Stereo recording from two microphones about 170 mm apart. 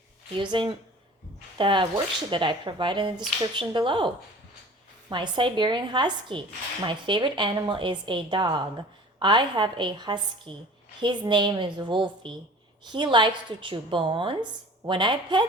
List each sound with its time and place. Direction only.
0.3 s a woman's voice: 30° right (ahead or behind)